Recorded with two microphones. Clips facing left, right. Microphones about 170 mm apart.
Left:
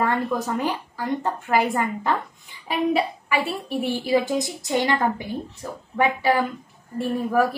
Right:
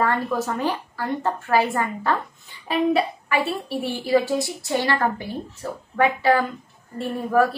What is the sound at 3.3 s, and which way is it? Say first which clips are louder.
Speech: right 1 dB; 15° left (ahead or behind).